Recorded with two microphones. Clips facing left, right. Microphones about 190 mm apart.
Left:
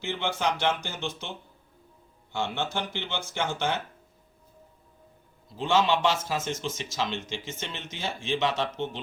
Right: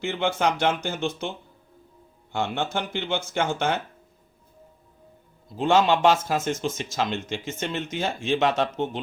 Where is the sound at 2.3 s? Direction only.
50° right (ahead or behind).